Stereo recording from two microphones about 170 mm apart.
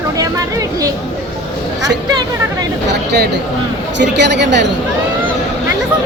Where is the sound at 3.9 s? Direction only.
90° right.